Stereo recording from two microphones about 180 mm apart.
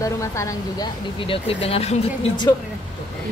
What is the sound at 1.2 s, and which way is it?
Speech, 30° left (ahead or behind).